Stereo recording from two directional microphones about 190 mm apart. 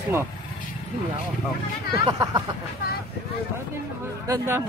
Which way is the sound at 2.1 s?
20° right (ahead or behind).